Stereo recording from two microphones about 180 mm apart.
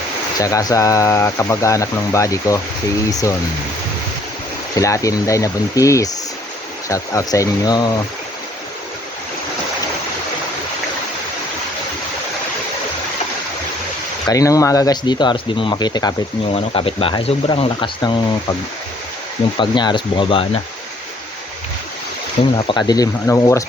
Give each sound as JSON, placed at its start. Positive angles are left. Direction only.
{"t": 0.3, "sound": "speech", "side_deg": 20}
{"t": 4.7, "sound": "speech", "side_deg": 20}
{"t": 14.3, "sound": "speech", "side_deg": 20}
{"t": 19.5, "sound": "speech", "side_deg": 25}
{"t": 22.5, "sound": "speech", "side_deg": 25}